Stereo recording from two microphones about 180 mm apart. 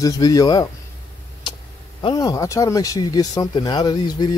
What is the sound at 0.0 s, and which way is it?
Speech, 20° left (ahead or behind).